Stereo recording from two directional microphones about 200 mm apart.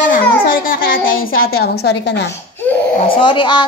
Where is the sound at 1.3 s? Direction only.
90° left.